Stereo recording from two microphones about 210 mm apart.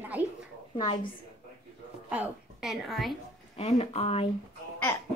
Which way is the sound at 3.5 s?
30° left (ahead or behind).